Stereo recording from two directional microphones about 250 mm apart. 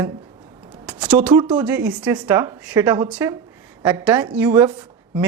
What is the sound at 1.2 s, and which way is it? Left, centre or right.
Speech, centre.